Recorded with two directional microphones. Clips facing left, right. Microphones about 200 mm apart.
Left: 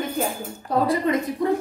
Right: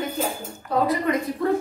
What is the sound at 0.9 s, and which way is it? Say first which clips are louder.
Speech: left 1 dB; 25° left (ahead or behind).